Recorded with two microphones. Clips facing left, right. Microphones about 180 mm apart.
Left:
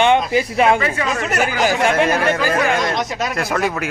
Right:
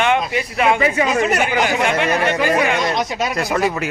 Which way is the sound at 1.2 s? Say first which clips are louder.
Right 1 dB; centre (ahead or behind).